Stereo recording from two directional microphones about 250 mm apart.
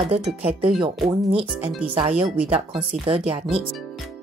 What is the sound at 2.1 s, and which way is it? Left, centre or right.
Speech, centre.